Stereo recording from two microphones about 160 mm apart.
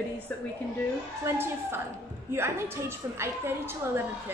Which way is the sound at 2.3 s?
15° right (ahead or behind).